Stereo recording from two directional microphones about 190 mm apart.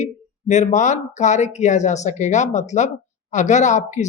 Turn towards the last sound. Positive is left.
turn(degrees=40)  # may be behind; listen again after turning